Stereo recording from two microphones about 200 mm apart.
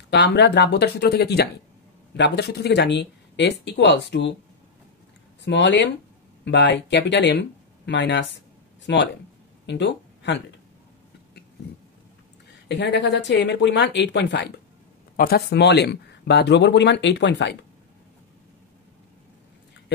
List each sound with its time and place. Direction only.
0.1 s speech: 60° left (ahead or behind)
5.4 s speech: 60° left (ahead or behind)
12.6 s speech: 60° left (ahead or behind)